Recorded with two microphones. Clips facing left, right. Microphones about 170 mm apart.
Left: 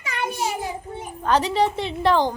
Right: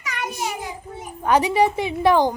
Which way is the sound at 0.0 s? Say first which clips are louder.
Left 2 dB; 30° left (ahead or behind).